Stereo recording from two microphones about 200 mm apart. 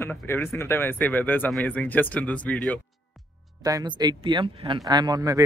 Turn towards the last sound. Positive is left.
turn(degrees=-15)  # may be behind; listen again after turning